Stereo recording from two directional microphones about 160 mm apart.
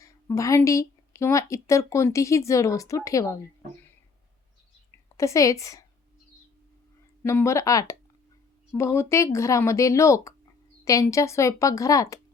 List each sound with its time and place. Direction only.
0.0 s speech: 20° left (ahead or behind)
5.1 s speech: 20° left (ahead or behind)
7.2 s speech: 15° left (ahead or behind)